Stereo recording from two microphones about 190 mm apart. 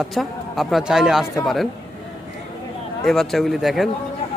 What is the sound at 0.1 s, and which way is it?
Speech, centre (ahead or behind).